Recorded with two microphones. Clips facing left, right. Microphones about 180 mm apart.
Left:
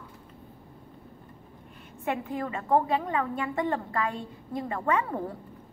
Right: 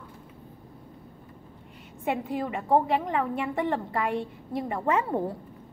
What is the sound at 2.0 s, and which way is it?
A woman's voice, 15° right (ahead or behind).